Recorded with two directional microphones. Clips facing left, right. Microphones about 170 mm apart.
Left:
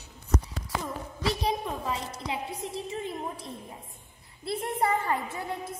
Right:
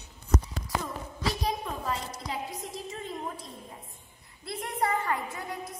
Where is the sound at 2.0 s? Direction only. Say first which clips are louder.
Left 2 dB; 30° left (ahead or behind).